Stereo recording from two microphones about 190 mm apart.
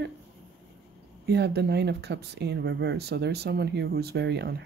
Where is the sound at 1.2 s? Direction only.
60° right (ahead or behind).